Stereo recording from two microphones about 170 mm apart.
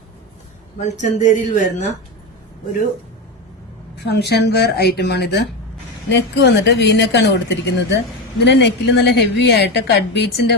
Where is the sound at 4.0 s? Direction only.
75° left (ahead or behind).